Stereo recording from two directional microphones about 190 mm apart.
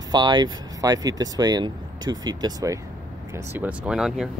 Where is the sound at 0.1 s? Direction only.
25° right (ahead or behind).